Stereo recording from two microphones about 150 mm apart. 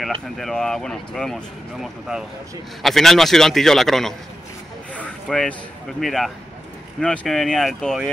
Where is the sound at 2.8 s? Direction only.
Centre (ahead or behind).